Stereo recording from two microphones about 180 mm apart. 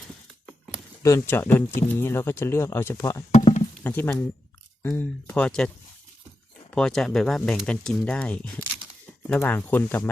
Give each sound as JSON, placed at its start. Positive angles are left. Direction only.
{"t": 1.0, "sound": "speech", "side_deg": 15}
{"t": 3.3, "sound": "a sound", "side_deg": 40}
{"t": 3.8, "sound": "speech", "side_deg": 10}